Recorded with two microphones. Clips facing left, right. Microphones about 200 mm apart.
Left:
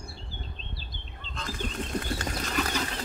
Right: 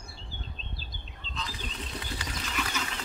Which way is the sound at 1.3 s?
50° left (ahead or behind).